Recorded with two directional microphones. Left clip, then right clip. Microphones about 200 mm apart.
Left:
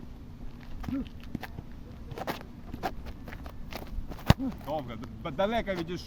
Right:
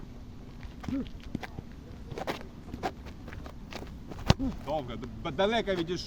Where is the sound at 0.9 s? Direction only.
10° right (ahead or behind).